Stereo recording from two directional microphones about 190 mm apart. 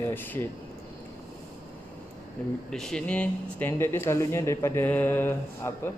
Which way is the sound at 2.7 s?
5° left (ahead or behind).